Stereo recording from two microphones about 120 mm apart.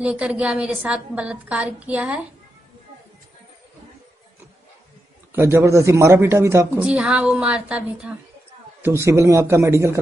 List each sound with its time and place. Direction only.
0.0 s a woman's voice: 10° right (ahead or behind)
5.3 s speech: 20° right (ahead or behind)
6.8 s a woman's voice: 10° right (ahead or behind)
8.8 s speech: 20° right (ahead or behind)